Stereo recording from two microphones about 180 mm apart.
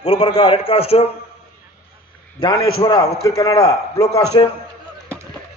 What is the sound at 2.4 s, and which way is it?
A man's voice, 30° left (ahead or behind).